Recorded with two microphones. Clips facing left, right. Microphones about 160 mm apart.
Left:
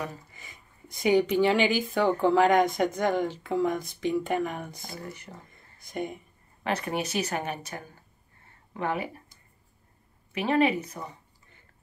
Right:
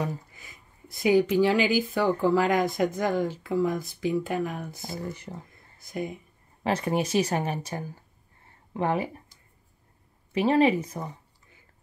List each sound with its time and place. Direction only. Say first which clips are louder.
0.3 s speech: even; centre (ahead or behind)
4.8 s speech: right 5 dB; 30° right (ahead or behind)
5.5 s a sound: right 1 dB; centre (ahead or behind)
6.6 s speech: right 3 dB; 30° right (ahead or behind)
10.3 s speech: right 3 dB; 30° right (ahead or behind)